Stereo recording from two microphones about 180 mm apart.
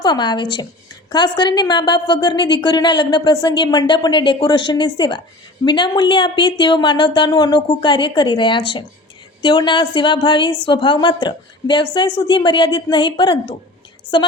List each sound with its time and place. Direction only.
0.0 s speech: 25° left (ahead or behind)